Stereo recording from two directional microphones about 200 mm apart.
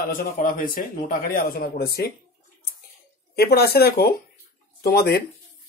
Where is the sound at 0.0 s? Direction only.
45° left (ahead or behind).